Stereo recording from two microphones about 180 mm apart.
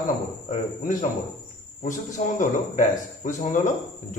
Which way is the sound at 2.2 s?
40° left (ahead or behind).